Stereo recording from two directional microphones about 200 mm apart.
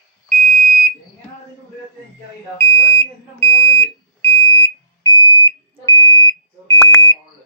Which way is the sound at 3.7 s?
15° left (ahead or behind).